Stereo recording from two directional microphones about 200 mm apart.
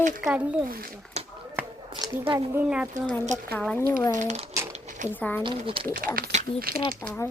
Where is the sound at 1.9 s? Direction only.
20° right (ahead or behind).